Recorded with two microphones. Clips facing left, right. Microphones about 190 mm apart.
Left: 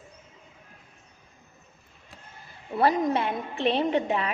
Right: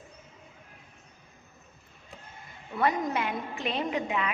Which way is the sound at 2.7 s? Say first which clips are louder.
Left 4 dB; 30° left (ahead or behind).